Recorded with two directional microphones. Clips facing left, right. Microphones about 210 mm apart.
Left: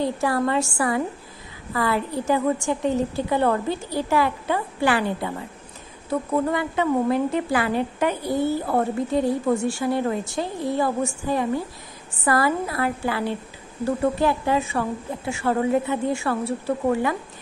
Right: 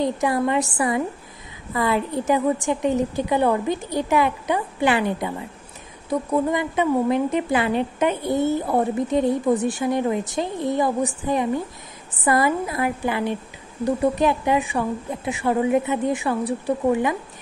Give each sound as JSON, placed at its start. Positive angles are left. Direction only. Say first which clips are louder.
{"t": 0.0, "sound": "a woman's voice", "louder": "right 1 dB", "side_deg": -20}